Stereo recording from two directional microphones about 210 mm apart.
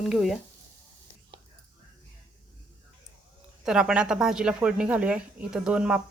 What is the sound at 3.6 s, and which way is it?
Speech, 5° right (ahead or behind).